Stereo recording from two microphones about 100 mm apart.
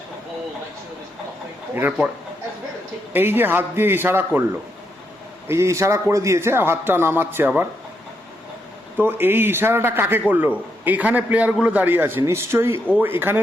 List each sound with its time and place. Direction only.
3.1 s a man's voice: 20° right (ahead or behind)
5.5 s a man's voice: 30° right (ahead or behind)
9.0 s a man's voice: 20° right (ahead or behind)